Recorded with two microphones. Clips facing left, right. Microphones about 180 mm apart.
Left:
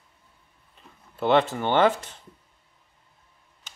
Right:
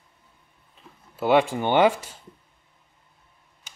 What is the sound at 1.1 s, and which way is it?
Speech, 5° right (ahead or behind).